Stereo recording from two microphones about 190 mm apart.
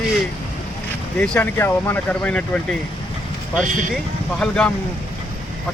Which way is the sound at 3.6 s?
40° right (ahead or behind).